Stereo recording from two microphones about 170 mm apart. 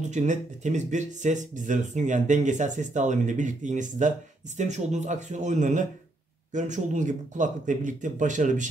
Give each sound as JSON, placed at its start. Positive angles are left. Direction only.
{"t": 0.0, "sound": "speech", "side_deg": -45}